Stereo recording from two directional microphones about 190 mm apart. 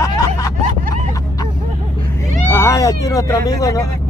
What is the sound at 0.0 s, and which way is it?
Snicker, 15° left (ahead or behind).